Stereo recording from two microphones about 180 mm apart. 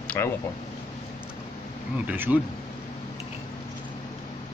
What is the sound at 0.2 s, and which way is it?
Speech, 15° left (ahead or behind).